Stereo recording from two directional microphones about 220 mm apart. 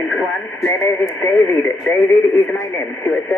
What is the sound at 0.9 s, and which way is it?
Speech, 10° left (ahead or behind).